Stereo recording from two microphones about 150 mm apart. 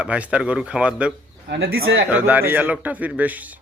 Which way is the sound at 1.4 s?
90° right.